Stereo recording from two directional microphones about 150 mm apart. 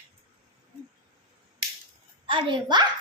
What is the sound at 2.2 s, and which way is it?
Speech, 35° right (ahead or behind).